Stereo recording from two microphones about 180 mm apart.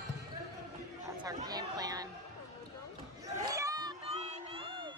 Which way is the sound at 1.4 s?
20° right (ahead or behind).